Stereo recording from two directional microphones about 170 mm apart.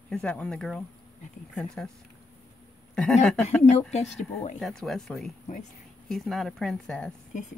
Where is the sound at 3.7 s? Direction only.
40° left (ahead or behind).